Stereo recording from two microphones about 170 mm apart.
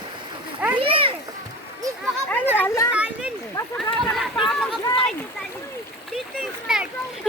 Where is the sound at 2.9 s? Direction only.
5° right (ahead or behind).